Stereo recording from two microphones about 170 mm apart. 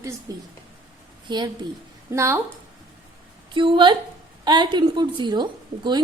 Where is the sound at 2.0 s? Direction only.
15° right (ahead or behind).